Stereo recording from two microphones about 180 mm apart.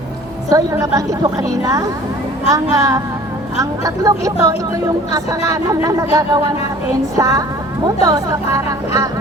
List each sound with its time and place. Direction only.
0.5 s a woman's voice: 20° right (ahead or behind)